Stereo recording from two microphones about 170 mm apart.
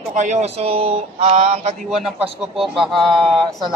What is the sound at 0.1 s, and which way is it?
Speech, 45° right (ahead or behind).